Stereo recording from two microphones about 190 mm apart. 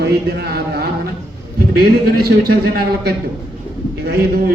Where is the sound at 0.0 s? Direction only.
60° right (ahead or behind).